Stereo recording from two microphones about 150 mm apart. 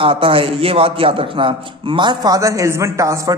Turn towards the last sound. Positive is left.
turn(degrees=-20)  # may be behind; listen again after turning